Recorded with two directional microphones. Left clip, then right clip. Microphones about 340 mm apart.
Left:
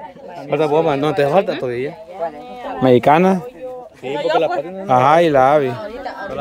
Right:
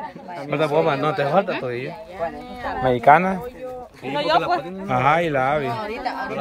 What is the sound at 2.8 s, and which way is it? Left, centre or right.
Speech, left.